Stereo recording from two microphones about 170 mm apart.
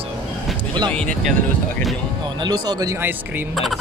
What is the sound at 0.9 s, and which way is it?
Speech, 5° left (ahead or behind).